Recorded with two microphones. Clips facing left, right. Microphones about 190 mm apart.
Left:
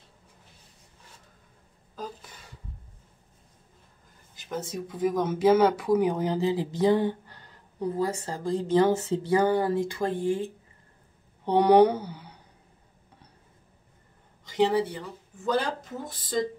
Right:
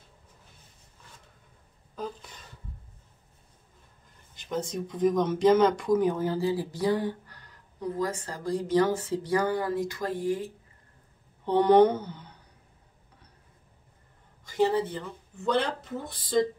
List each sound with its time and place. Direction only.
4.4 s speech: 5° left (ahead or behind); by 10.5 s 30° left (ahead or behind)
11.4 s speech: 15° left (ahead or behind)
14.5 s speech: 15° left (ahead or behind)